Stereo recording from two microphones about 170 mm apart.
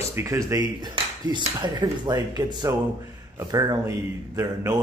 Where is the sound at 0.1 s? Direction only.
15° right (ahead or behind).